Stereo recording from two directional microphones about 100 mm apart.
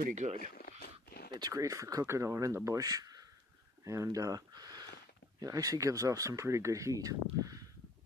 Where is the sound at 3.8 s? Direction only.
35° right (ahead or behind).